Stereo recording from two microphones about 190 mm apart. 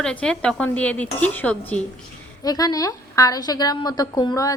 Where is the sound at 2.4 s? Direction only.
20° left (ahead or behind).